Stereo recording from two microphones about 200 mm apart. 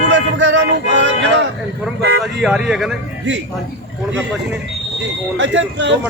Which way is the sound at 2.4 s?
5° right (ahead or behind).